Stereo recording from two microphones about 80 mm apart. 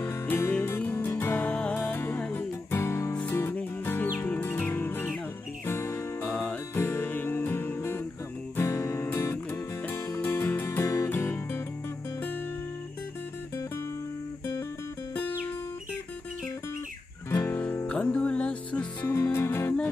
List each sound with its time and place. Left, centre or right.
0.0 s music: left
1.4 s music: centre
6.2 s music: centre
6.7 s music: left
17.3 s music: left
17.6 s music: centre
19.0 s music: left